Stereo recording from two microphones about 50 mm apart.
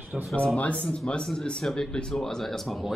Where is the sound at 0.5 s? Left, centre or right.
Left.